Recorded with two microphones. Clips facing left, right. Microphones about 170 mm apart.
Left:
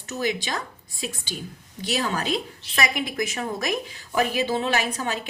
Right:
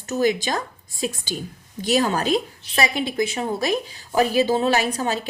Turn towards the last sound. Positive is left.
turn(degrees=-35)  # may be behind; listen again after turning